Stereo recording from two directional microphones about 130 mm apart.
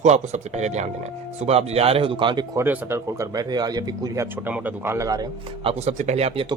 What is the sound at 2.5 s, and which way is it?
Speech, 20° right (ahead or behind).